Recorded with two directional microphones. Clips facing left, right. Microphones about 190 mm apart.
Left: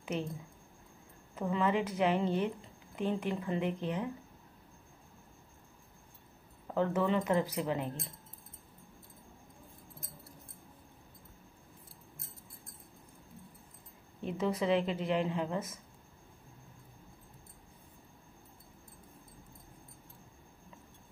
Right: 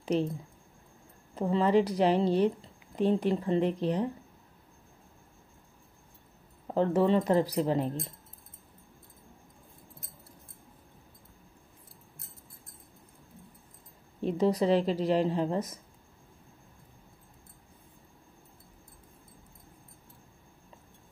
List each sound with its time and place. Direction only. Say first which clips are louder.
0.0 s speech: right 8 dB; 35° right (ahead or behind)
1.3 s speech: right 6 dB; 35° right (ahead or behind)
6.7 s speech: right 5 dB; 35° right (ahead or behind)
14.2 s speech: right 6 dB; 35° right (ahead or behind)